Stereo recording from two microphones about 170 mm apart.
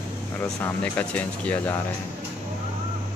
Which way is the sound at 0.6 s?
10° left (ahead or behind).